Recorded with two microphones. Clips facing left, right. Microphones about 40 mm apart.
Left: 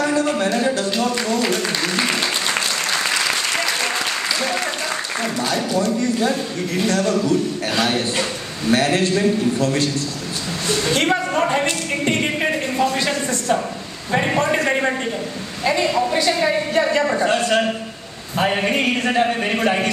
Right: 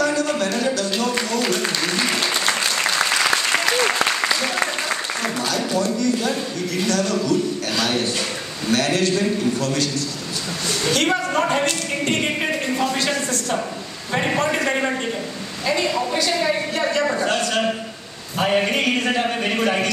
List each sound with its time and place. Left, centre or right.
0.0 s music: left
1.3 s a sound: centre
5.8 s a man's voice: left
11.1 s a woman's voice: centre
12.2 s speech: centre
14.1 s a woman's voice: centre
18.4 s a woman's voice: centre